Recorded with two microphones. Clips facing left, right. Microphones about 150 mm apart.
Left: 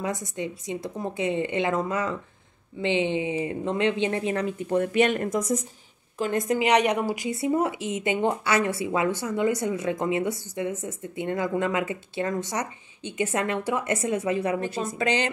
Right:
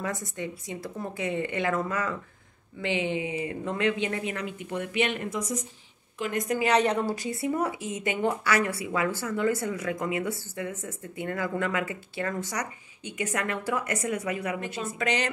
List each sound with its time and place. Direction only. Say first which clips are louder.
0.0 s a woman's voice: left 3 dB; 20° left (ahead or behind); by 5.6 s 45° left (ahead or behind)
6.1 s a woman's voice: left 4 dB; 30° left (ahead or behind)
6.6 s a woman's voice: left 1 dB; 15° left (ahead or behind)